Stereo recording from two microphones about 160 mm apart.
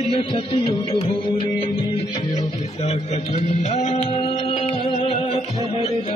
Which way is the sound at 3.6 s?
40° left (ahead or behind).